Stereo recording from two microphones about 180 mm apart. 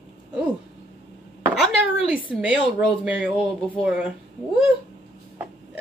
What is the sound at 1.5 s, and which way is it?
Speech, 5° right (ahead or behind).